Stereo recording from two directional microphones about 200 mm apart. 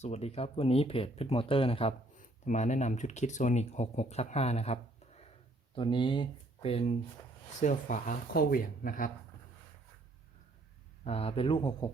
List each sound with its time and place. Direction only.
0.0 s speech: 30° left (ahead or behind)
2.1 s speech: 40° left (ahead or behind)
11.0 s speech: 30° left (ahead or behind)